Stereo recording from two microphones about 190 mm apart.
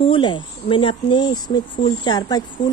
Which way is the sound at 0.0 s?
25° left (ahead or behind).